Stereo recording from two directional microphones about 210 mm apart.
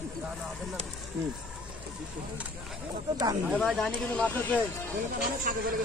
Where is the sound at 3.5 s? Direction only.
Centre (ahead or behind).